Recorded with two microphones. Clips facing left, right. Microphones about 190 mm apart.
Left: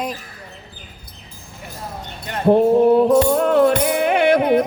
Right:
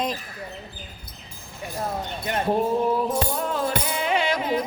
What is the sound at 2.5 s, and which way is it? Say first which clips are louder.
Music: left 11 dB; 65° left (ahead or behind).